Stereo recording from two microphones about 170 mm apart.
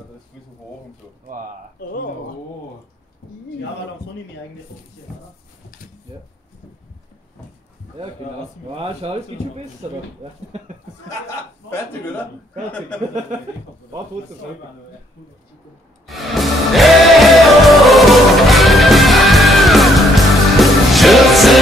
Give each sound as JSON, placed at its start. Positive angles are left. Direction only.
{"t": 1.8, "sound": "speech", "side_deg": 60}
{"t": 8.7, "sound": "speech", "side_deg": -35}
{"t": 11.7, "sound": "a man's voice", "side_deg": 10}
{"t": 16.1, "sound": "music", "side_deg": 0}